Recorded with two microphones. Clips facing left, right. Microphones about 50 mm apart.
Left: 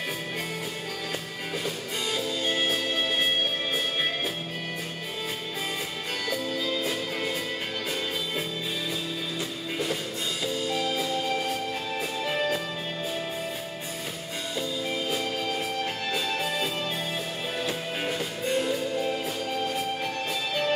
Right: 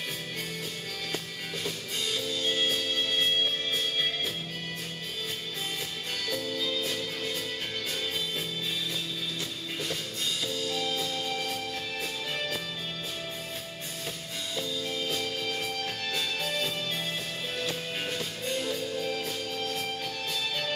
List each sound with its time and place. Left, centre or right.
2.1 s music: centre
6.3 s music: centre
10.4 s music: centre
14.9 s music: centre